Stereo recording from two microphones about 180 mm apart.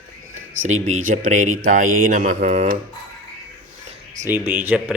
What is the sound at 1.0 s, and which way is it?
Speech, 45° right (ahead or behind).